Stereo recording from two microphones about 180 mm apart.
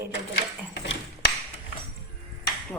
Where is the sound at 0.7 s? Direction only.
80° left.